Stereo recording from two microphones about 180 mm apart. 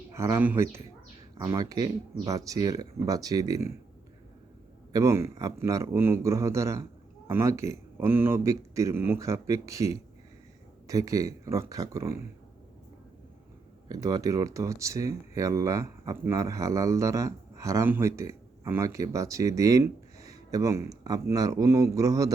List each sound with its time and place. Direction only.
0.1 s speech: 15° right (ahead or behind)
4.9 s speech: 15° right (ahead or behind)
13.8 s speech: 20° right (ahead or behind)